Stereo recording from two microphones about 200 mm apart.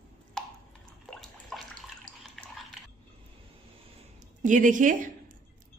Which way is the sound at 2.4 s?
Centre (ahead or behind).